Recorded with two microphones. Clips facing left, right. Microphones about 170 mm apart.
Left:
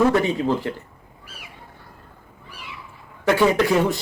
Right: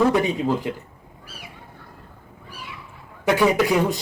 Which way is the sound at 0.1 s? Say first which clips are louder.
Left 1 dB; 15° right (ahead or behind).